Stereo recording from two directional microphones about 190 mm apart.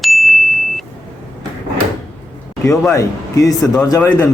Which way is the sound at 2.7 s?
15° left (ahead or behind).